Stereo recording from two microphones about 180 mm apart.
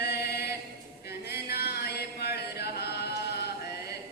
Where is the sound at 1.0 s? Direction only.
65° left (ahead or behind).